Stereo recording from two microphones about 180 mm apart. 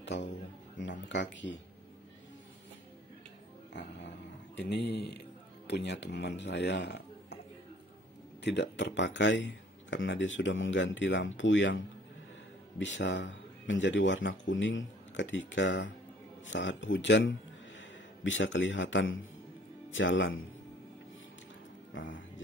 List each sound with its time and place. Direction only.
0.0 s speech: 75° left (ahead or behind)
3.8 s dog: 70° left (ahead or behind)
4.6 s speech: 65° left (ahead or behind)
8.5 s speech: 70° left (ahead or behind); by 20.4 s 90° left
21.9 s speech: 90° left